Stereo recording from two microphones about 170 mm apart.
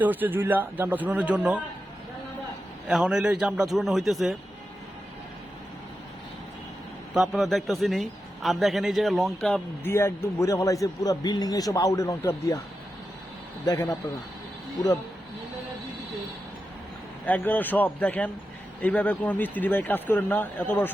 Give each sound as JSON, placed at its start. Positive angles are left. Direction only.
{"t": 0.0, "sound": "speech", "side_deg": -10}
{"t": 2.8, "sound": "a man's voice", "side_deg": -5}
{"t": 7.1, "sound": "a man's voice", "side_deg": 0}
{"t": 9.9, "sound": "a man's voice", "side_deg": 15}
{"t": 13.7, "sound": "a man's voice", "side_deg": 20}
{"t": 17.2, "sound": "speech", "side_deg": 10}